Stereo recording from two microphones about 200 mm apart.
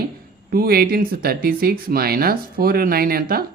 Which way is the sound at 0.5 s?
50° right (ahead or behind).